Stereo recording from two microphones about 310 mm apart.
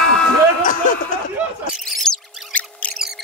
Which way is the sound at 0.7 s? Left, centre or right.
Left.